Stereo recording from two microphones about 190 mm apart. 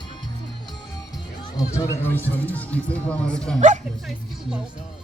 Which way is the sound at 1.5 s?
15° left (ahead or behind).